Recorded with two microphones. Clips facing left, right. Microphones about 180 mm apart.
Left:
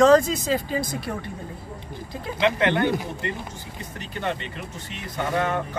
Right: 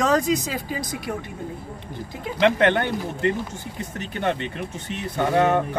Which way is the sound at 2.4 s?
55° right (ahead or behind).